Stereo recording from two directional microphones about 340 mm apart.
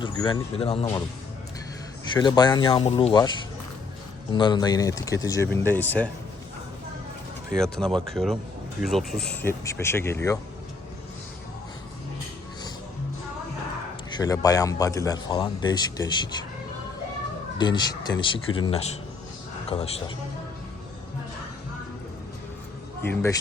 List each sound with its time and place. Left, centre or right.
0.0 s speech: centre
2.1 s speech: centre
7.5 s speech: centre
14.2 s speech: centre
17.6 s speech: centre
23.0 s speech: centre